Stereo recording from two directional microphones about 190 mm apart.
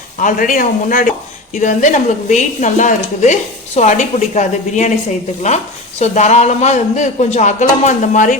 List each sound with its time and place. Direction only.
0.2 s speech: 45° left (ahead or behind)
6.0 s speech: 35° left (ahead or behind)